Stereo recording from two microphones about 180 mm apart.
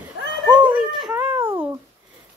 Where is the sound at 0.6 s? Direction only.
10° right (ahead or behind).